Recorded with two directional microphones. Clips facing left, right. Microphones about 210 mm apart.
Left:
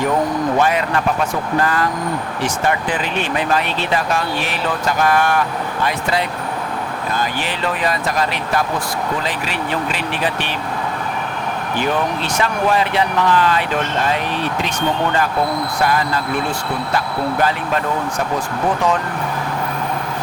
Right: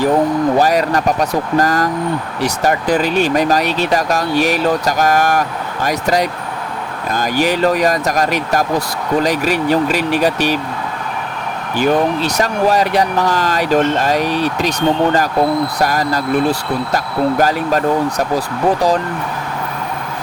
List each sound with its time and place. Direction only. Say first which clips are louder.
0.6 s speech: right 3 dB; 40° right (ahead or behind)
12.2 s speech: right 4 dB; 40° right (ahead or behind)